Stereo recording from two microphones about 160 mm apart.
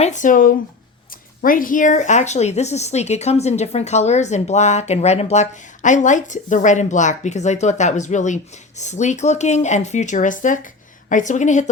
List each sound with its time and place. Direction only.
0.0 s speech: 50° left (ahead or behind)